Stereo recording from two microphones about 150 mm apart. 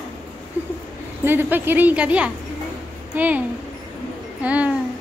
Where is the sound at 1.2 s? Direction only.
15° right (ahead or behind).